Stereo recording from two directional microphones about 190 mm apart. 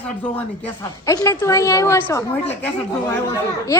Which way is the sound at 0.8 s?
15° left (ahead or behind).